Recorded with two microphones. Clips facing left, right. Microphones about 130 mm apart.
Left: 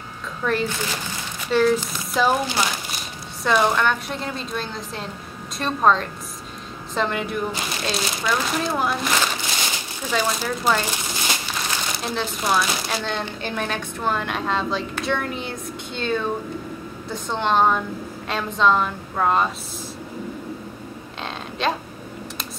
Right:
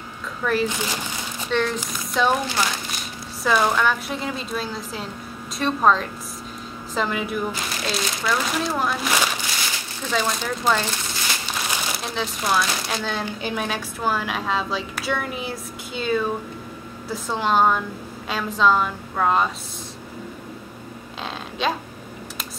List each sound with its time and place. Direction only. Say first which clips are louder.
0.4 s speech: right 1 dB; centre (ahead or behind)
0.7 s speech: right 1 dB; 15° right (ahead or behind)
1.5 s speech: left 5 dB; 5° left (ahead or behind)
3.4 s speech: left 1 dB; centre (ahead or behind)
11.7 s speech: left 2 dB; centre (ahead or behind)
21.2 s a sound: even; centre (ahead or behind)